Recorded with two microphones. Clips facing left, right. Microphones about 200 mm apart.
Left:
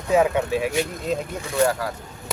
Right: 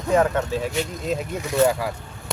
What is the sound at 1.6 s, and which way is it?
Speech, 15° left (ahead or behind).